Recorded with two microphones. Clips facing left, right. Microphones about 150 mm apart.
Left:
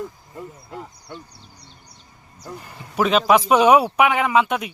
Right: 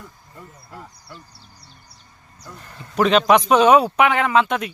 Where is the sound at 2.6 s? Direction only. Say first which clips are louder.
Right 2 dB; 10° left (ahead or behind).